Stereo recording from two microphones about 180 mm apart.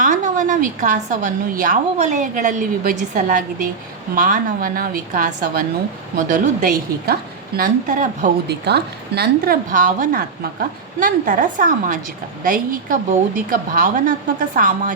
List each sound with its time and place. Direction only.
0.0 s a woman's voice: 45° right (ahead or behind)
8.4 s a woman's voice: 65° right (ahead or behind); by 14.9 s 50° right (ahead or behind)